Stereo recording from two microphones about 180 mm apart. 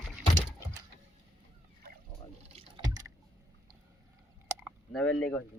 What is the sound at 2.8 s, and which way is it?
Water, 20° right (ahead or behind).